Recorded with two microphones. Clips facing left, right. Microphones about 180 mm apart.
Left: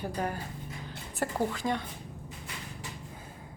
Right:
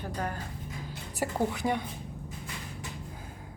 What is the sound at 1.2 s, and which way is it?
Speech, 10° right (ahead or behind).